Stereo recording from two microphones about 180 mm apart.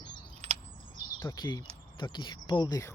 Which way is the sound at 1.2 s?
20° left (ahead or behind).